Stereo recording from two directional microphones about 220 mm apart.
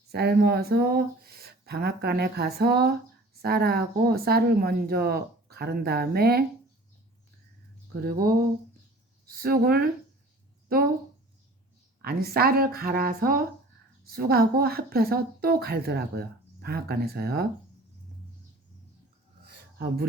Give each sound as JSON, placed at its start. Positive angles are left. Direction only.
{"t": 0.1, "sound": "a woman's voice", "side_deg": -45}
{"t": 8.0, "sound": "a woman's voice", "side_deg": -40}
{"t": 12.0, "sound": "a woman's voice", "side_deg": -45}
{"t": 19.5, "sound": "a sound", "side_deg": -45}